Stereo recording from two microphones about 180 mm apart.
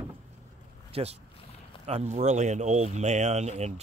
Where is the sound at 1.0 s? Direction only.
35° right (ahead or behind).